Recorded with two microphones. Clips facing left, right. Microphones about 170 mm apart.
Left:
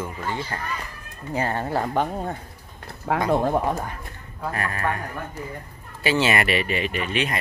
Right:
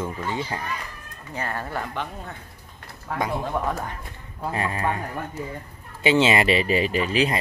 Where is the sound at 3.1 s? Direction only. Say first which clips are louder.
Left 5 dB; 90° left.